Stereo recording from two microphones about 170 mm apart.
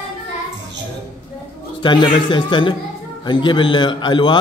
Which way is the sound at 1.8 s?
30° left (ahead or behind).